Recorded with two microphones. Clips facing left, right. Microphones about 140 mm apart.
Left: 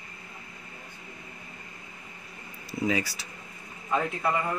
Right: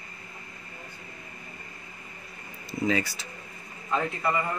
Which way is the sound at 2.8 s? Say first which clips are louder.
Right 1 dB; 10° left (ahead or behind).